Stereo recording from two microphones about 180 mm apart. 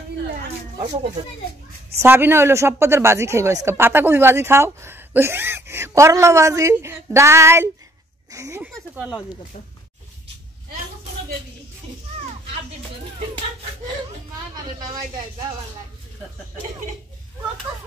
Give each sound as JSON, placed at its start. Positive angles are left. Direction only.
{"t": 2.0, "sound": "speech", "side_deg": -10}
{"t": 8.6, "sound": "speech", "side_deg": -5}